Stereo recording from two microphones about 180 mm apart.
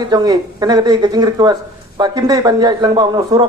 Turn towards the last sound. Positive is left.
turn(degrees=-20)  # may be behind; listen again after turning